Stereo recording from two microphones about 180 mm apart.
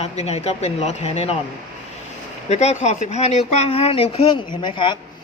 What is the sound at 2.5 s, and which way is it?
A woman's voice, 40° left (ahead or behind).